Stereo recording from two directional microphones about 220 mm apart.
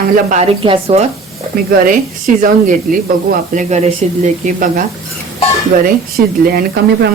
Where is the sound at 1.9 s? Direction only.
35° right (ahead or behind).